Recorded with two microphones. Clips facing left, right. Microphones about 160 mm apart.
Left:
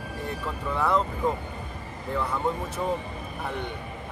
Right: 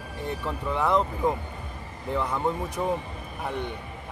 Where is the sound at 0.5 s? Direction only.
20° right (ahead or behind).